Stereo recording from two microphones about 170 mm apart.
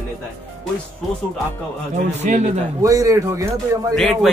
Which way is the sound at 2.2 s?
40° right (ahead or behind).